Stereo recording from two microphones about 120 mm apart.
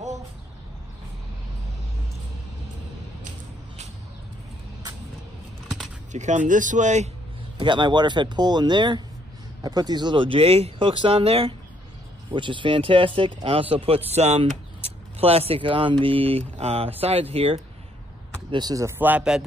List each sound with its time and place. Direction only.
6.1 s speech: 90° right
7.5 s speech: 40° right (ahead or behind); by 17.6 s 55° right (ahead or behind)
18.5 s speech: 35° right (ahead or behind)
18.9 s speech: 15° right (ahead or behind)